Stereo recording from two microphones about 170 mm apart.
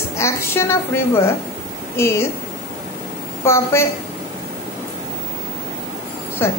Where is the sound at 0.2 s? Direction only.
15° left (ahead or behind).